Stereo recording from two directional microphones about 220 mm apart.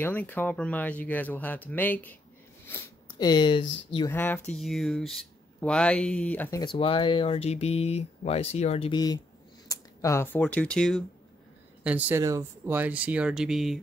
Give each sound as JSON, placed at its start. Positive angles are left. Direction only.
{"t": 0.0, "sound": "speech", "side_deg": 10}
{"t": 2.6, "sound": "a sound", "side_deg": 15}
{"t": 4.1, "sound": "speech", "side_deg": 10}
{"t": 6.6, "sound": "speech", "side_deg": 25}